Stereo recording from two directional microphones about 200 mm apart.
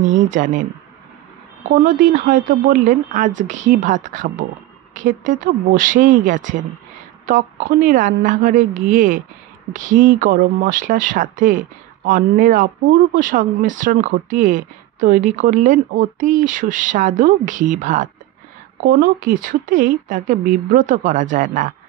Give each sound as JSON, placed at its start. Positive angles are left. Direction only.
{"t": 0.3, "sound": "speech", "side_deg": -40}
{"t": 1.9, "sound": "speech", "side_deg": -40}